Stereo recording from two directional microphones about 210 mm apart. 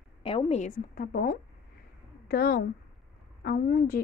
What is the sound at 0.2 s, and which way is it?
A woman's voice, 25° left (ahead or behind).